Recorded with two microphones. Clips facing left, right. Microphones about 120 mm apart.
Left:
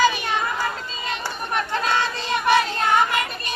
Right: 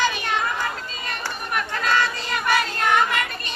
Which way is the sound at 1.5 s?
25° left (ahead or behind).